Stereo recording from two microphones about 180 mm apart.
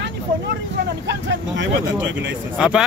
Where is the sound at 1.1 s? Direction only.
80° right.